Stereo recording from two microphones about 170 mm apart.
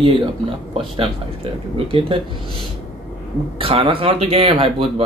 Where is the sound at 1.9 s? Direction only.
30° right (ahead or behind).